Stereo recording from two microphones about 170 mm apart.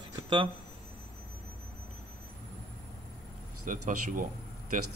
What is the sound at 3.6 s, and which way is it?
Speech, 50° right (ahead or behind).